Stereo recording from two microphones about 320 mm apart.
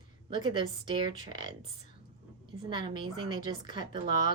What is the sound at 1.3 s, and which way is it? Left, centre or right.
Speech, left.